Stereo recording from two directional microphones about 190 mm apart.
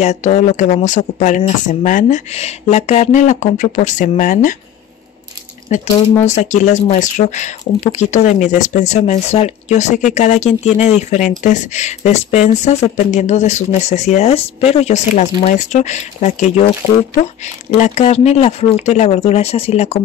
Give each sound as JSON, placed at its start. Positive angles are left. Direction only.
{"t": 0.0, "sound": "speech", "side_deg": 35}
{"t": 5.7, "sound": "speech", "side_deg": 40}